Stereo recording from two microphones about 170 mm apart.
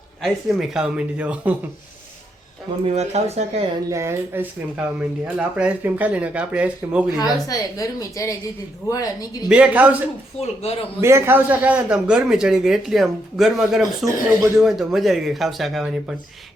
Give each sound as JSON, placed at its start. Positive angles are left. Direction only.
{"t": 0.2, "sound": "a man's voice", "side_deg": 0}
{"t": 2.8, "sound": "speech", "side_deg": -40}
{"t": 3.8, "sound": "speech", "side_deg": -15}
{"t": 7.2, "sound": "a woman's voice", "side_deg": 20}
{"t": 9.5, "sound": "speech", "side_deg": -10}
{"t": 10.4, "sound": "speech", "side_deg": 40}
{"t": 11.0, "sound": "a man's voice", "side_deg": -15}